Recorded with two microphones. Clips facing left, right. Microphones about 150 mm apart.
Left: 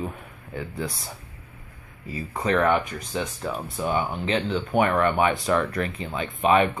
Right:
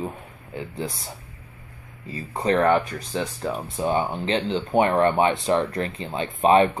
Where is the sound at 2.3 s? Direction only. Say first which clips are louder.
Right 2 dB; 35° right (ahead or behind).